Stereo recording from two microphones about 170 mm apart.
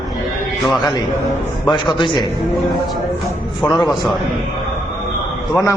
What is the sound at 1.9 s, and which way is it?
Speech, 30° left (ahead or behind).